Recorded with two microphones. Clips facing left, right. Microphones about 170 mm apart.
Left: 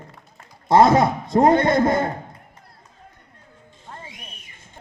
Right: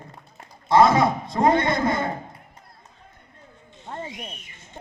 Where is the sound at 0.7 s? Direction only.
55° left (ahead or behind).